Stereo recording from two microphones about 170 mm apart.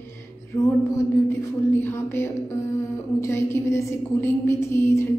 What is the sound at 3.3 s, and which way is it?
A woman's voice, 15° left (ahead or behind).